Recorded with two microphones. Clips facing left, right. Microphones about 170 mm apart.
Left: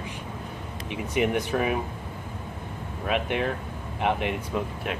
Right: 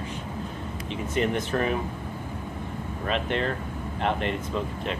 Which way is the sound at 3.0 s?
10° left (ahead or behind).